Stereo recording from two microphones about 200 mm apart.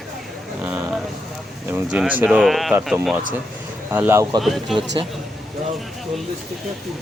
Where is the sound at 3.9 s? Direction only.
10° right (ahead or behind).